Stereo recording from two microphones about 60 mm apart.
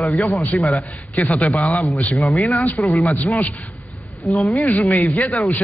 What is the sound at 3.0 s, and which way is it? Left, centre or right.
A man's voice, left.